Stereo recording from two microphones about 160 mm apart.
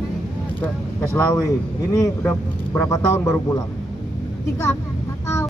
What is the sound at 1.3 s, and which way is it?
A man's voice, 20° left (ahead or behind).